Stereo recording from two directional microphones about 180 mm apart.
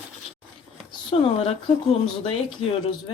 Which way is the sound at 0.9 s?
35° left (ahead or behind).